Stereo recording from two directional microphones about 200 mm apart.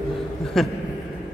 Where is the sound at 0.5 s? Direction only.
Centre (ahead or behind).